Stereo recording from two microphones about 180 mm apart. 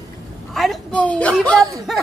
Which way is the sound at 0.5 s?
Centre (ahead or behind).